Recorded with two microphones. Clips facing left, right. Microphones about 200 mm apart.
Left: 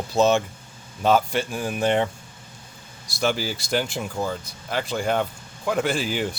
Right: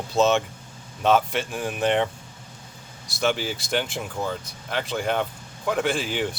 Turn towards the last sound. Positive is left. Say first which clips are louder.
# left 1 dB
turn(degrees=0)  # may be behind; listen again after turning